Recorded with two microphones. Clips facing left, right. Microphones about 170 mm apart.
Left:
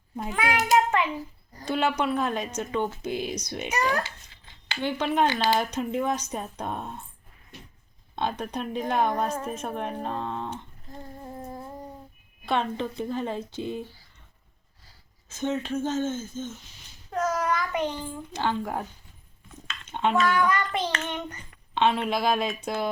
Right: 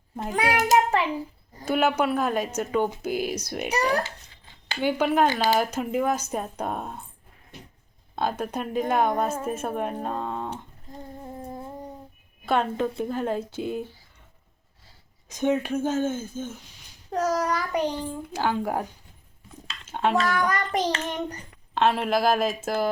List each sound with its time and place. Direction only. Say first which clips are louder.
0.3 s child singing: right 2 dB; 40° right (ahead or behind)
1.6 s speech: right 3 dB; 5° right (ahead or behind)
4.8 s speech: right 3 dB; 10° right (ahead or behind)
8.1 s a woman's voice: right 2 dB; 5° right (ahead or behind)
12.5 s a woman's voice: right 3 dB; 5° right (ahead or behind)
15.3 s speech: right 4 dB; 15° right (ahead or behind)
17.1 s child singing: right 2 dB; 35° right (ahead or behind)
18.3 s speech: right 2 dB; 10° right (ahead or behind)
19.8 s a sound: right 1 dB; 5° right (ahead or behind)
20.1 s child singing: left 4 dB; 40° right (ahead or behind)
21.8 s a woman's voice: right 2 dB; 5° right (ahead or behind)